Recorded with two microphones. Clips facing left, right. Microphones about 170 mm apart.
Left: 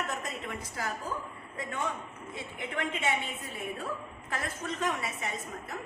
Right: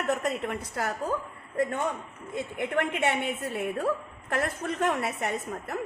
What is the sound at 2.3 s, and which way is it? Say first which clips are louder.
A woman's voice: right 9 dB; 60° right (ahead or behind).